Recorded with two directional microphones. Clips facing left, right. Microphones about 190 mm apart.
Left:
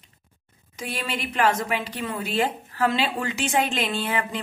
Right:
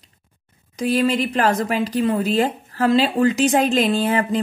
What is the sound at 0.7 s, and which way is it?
Speech, 35° right (ahead or behind).